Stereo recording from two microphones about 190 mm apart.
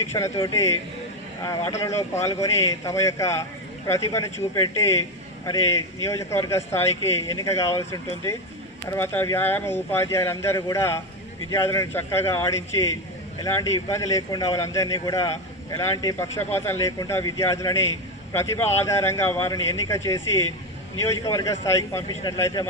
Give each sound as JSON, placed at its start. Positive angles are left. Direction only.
{"t": 0.1, "sound": "a man's voice", "side_deg": 20}